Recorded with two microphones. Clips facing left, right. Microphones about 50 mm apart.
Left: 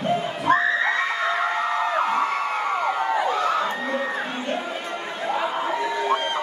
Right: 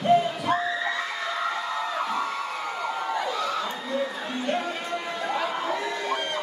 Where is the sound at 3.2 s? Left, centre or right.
Left.